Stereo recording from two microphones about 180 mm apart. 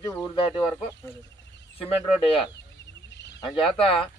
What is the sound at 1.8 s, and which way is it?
Speech, 30° left (ahead or behind).